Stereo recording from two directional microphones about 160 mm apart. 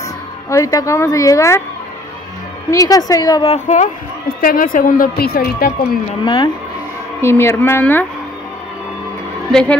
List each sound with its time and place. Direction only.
0.5 s a woman's voice: 20° left (ahead or behind)
2.7 s a woman's voice: 20° left (ahead or behind)
3.4 s speech: 50° left (ahead or behind)
4.4 s a woman's voice: 60° left (ahead or behind)
6.2 s speech: 35° left (ahead or behind)
7.2 s a woman's voice: 15° left (ahead or behind)
9.5 s a woman's voice: 5° left (ahead or behind)